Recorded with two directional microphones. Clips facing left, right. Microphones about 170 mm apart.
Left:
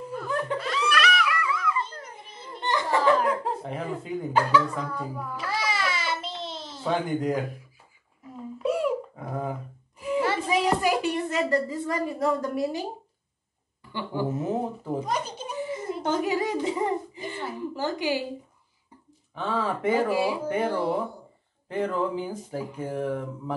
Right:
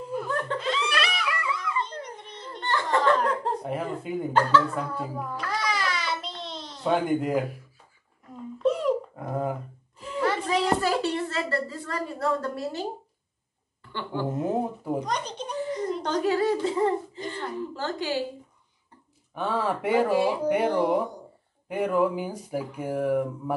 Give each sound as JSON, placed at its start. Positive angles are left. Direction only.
{"t": 0.6, "sound": "laughter", "side_deg": -25}
{"t": 2.0, "sound": "giggle", "side_deg": 5}
{"t": 3.6, "sound": "speech", "side_deg": -5}
{"t": 4.3, "sound": "speech", "side_deg": 10}
{"t": 4.7, "sound": "speech", "side_deg": -10}
{"t": 5.3, "sound": "babbling", "side_deg": 5}
{"t": 8.5, "sound": "babbling", "side_deg": 10}
{"t": 9.9, "sound": "a sound", "side_deg": 10}
{"t": 13.9, "sound": "speech", "side_deg": 10}
{"t": 15.0, "sound": "a sound", "side_deg": 5}
{"t": 16.2, "sound": "a woman's voice", "side_deg": 15}
{"t": 19.3, "sound": "speech", "side_deg": -10}
{"t": 20.1, "sound": "speech", "side_deg": 10}
{"t": 20.4, "sound": "speech", "side_deg": -15}